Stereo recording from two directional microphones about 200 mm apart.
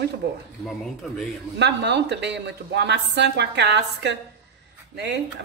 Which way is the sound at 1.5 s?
60° right (ahead or behind).